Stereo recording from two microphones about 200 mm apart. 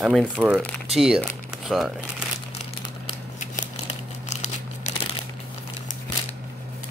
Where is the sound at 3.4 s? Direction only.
35° left (ahead or behind).